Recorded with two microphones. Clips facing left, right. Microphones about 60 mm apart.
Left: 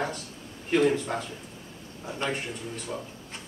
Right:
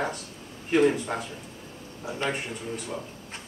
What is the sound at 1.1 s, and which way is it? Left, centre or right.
Speech, centre.